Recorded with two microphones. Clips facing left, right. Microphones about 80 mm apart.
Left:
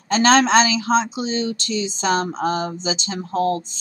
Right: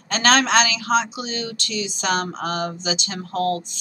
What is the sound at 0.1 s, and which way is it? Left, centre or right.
Speech, left.